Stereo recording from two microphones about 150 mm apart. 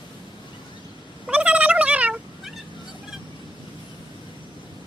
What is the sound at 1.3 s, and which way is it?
Turkey, 10° right (ahead or behind).